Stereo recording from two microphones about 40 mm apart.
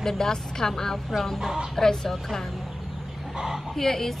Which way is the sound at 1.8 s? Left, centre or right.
Centre.